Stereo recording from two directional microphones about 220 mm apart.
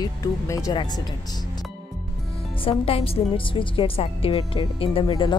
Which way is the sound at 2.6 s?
25° left (ahead or behind).